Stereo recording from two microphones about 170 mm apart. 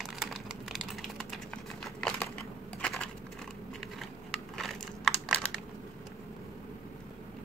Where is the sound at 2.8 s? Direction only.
5° left (ahead or behind).